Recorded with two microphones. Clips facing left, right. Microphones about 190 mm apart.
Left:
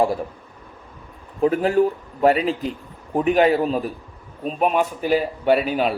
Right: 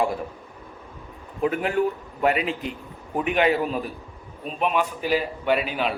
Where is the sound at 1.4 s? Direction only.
35° left (ahead or behind).